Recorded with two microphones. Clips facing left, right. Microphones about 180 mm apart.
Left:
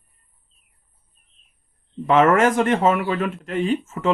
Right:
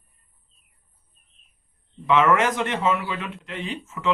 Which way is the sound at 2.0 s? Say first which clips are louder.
Left 4 dB; 45° left (ahead or behind).